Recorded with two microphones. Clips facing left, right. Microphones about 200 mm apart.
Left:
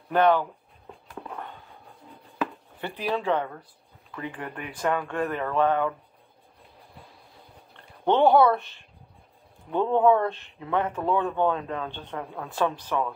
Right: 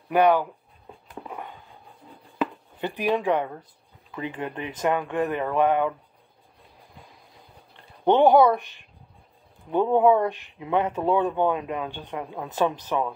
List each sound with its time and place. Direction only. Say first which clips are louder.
0.1 s speech: right 2 dB; 10° right (ahead or behind)
1.0 s a sound: right 1 dB; 10° right (ahead or behind)
2.8 s speech: right 4 dB; 15° right (ahead or behind)
8.0 s speech: right 2 dB; 15° right (ahead or behind)